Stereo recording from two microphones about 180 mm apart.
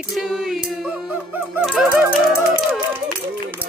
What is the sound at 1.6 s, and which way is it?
Fowl, 5° right (ahead or behind).